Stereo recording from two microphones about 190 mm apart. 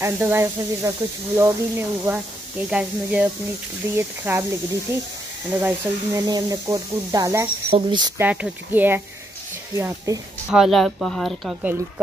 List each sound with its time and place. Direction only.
0.0 s speech: 15° right (ahead or behind)
8.2 s speech: 10° right (ahead or behind)
10.5 s speech: centre (ahead or behind)